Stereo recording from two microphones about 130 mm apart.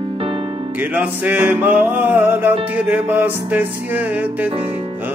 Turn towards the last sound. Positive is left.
turn(degrees=-10)  # may be behind; listen again after turning